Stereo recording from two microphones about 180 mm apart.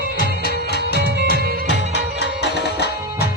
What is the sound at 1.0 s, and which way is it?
Music, 65° right (ahead or behind).